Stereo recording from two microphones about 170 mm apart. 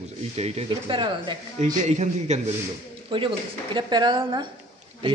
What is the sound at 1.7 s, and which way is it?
Speech, 45° right (ahead or behind).